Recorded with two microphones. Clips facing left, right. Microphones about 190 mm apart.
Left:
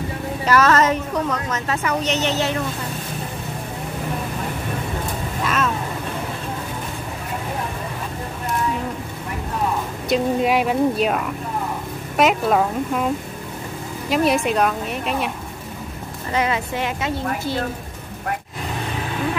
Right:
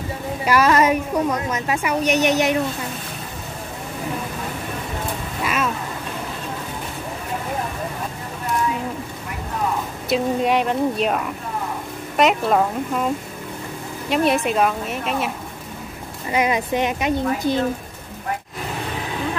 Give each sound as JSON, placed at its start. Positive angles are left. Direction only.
{"t": 0.5, "sound": "a woman's voice", "side_deg": -10}
{"t": 10.0, "sound": "speech", "side_deg": 0}
{"t": 16.3, "sound": "a woman's voice", "side_deg": -15}